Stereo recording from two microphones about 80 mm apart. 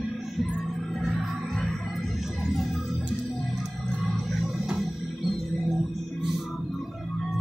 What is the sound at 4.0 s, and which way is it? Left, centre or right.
Music, centre.